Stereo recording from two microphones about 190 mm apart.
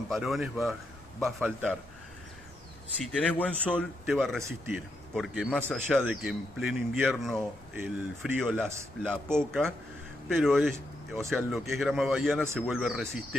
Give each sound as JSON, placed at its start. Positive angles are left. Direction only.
{"t": 0.1, "sound": "speech", "side_deg": 0}
{"t": 3.0, "sound": "speech", "side_deg": 5}